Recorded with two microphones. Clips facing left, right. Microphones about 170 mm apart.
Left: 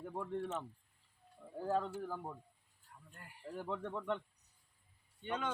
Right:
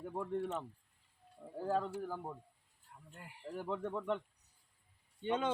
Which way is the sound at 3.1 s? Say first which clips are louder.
Right 2 dB; 20° right (ahead or behind).